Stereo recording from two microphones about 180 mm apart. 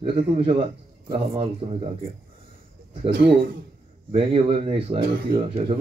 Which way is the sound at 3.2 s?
75° right (ahead or behind).